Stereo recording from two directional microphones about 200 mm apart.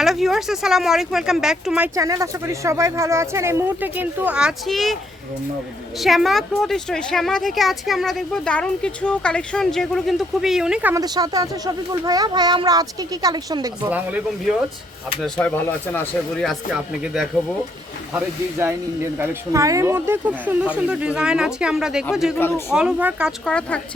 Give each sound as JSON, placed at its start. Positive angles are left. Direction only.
{"t": 0.0, "sound": "speech", "side_deg": 0}
{"t": 2.0, "sound": "speech", "side_deg": -15}
{"t": 6.0, "sound": "speech", "side_deg": 0}
{"t": 10.9, "sound": "speech", "side_deg": -20}
{"t": 13.9, "sound": "speech", "side_deg": -10}
{"t": 15.2, "sound": "speech", "side_deg": 5}
{"t": 18.5, "sound": "speech", "side_deg": -15}
{"t": 22.4, "sound": "a man's voice", "side_deg": 10}
{"t": 22.7, "sound": "speech", "side_deg": -5}